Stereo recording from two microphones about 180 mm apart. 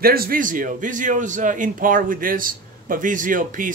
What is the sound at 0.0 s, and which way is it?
A man's voice, 55° right (ahead or behind).